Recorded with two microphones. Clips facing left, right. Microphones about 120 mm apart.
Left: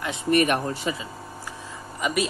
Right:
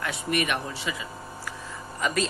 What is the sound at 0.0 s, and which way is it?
Speech, 25° left (ahead or behind).